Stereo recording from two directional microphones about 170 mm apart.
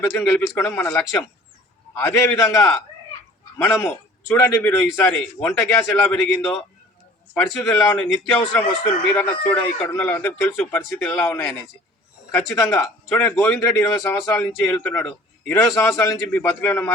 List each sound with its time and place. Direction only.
0.1 s a man's voice: 15° left (ahead or behind)
3.8 s a man's voice: 15° left (ahead or behind)